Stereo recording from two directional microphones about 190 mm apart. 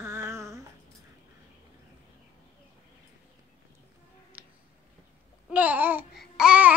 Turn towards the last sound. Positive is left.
turn(degrees=-5)  # may be behind; listen again after turning